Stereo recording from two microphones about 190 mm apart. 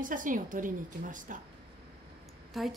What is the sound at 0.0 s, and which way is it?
A woman's voice, 45° right (ahead or behind).